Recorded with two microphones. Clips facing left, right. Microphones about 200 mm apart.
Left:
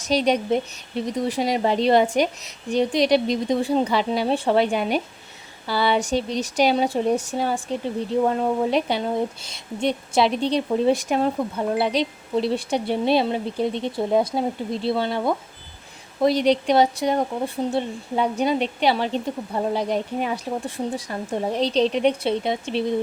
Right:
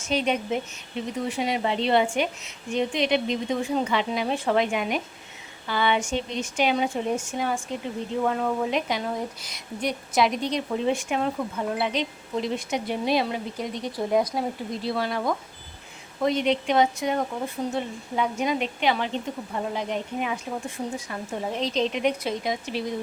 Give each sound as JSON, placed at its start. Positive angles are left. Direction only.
{"t": 0.0, "sound": "a woman's voice", "side_deg": 35}